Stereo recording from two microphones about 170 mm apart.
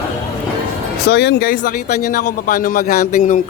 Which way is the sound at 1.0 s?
75° left (ahead or behind).